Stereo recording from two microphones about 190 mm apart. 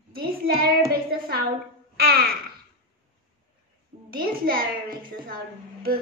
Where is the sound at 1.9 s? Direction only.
55° right (ahead or behind).